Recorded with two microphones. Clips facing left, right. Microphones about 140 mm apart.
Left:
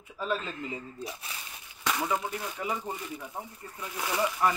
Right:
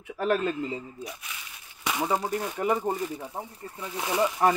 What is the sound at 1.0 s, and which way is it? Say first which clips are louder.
Speech: even; 35° left (ahead or behind).